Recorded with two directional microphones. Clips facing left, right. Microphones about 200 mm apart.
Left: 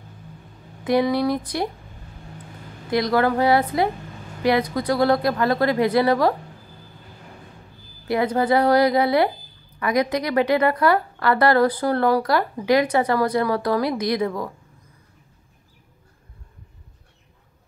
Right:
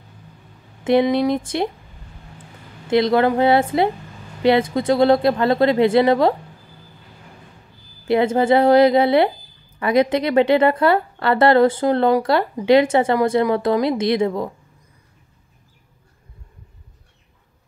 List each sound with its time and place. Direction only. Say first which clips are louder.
0.8 s a woman's voice: right 3 dB; 25° right (ahead or behind)
2.9 s a woman's voice: right 4 dB; 25° right (ahead or behind)
8.0 s a woman's voice: right 4 dB; 25° right (ahead or behind)